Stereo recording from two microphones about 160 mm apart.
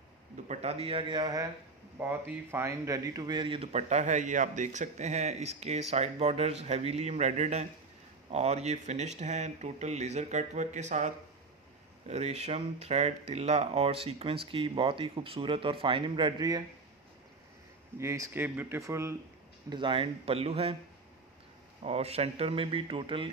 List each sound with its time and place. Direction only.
0.5 s speech: 40° right (ahead or behind); by 1.5 s 25° right (ahead or behind)
2.0 s speech: 10° right (ahead or behind); by 11.1 s 50° right (ahead or behind)
12.1 s speech: 40° right (ahead or behind); by 16.6 s 25° right (ahead or behind)
17.9 s speech: 20° right (ahead or behind)
19.7 s speech: 30° right (ahead or behind)
21.8 s speech: 40° right (ahead or behind)